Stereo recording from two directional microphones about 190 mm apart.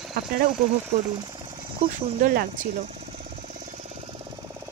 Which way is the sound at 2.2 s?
50° right (ahead or behind).